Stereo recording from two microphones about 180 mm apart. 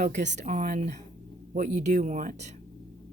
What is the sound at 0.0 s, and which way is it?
Speech, 40° right (ahead or behind).